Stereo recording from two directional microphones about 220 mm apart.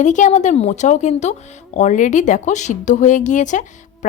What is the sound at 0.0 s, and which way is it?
Speech, 35° left (ahead or behind).